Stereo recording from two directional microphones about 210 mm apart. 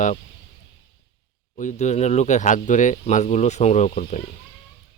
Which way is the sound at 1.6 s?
35° left (ahead or behind).